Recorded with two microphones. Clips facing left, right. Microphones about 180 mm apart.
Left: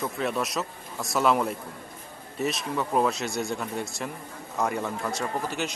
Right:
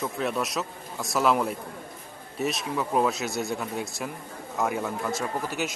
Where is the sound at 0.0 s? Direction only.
Centre (ahead or behind).